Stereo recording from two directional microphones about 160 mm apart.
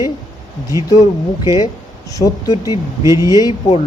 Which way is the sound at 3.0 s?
20° right (ahead or behind).